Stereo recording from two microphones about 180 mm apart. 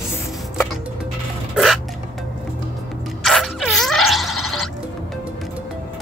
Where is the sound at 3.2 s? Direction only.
Centre (ahead or behind).